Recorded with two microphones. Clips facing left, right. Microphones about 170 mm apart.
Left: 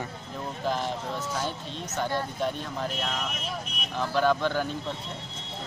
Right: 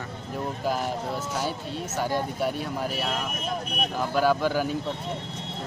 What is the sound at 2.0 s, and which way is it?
Speech, 10° right (ahead or behind).